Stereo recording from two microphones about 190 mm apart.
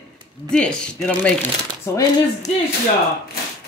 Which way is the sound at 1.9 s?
15° left (ahead or behind).